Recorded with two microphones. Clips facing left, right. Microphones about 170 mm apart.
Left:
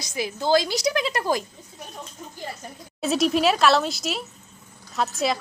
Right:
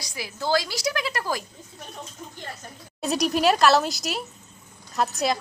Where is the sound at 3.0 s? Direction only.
Centre (ahead or behind).